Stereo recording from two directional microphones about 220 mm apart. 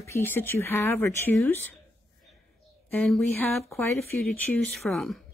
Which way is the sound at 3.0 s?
Centre (ahead or behind).